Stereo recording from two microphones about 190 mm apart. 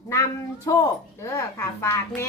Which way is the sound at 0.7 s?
15° left (ahead or behind).